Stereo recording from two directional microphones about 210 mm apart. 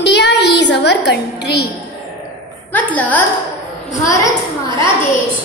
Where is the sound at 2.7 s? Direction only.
10° left (ahead or behind).